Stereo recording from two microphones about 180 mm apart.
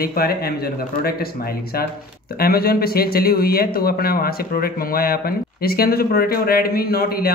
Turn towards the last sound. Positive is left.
turn(degrees=60)  # may be behind; listen again after turning